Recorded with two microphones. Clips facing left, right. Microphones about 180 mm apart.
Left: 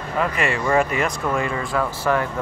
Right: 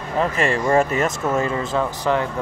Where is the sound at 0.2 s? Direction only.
30° right (ahead or behind).